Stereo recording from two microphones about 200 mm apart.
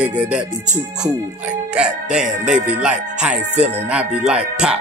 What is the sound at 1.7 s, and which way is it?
Music, 5° right (ahead or behind).